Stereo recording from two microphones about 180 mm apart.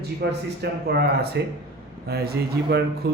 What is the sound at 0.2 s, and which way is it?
A man's voice, 60° right (ahead or behind).